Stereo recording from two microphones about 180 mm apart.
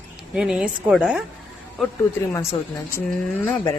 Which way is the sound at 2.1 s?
15° left (ahead or behind).